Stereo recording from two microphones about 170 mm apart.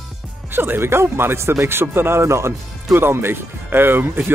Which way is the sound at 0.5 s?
10° right (ahead or behind).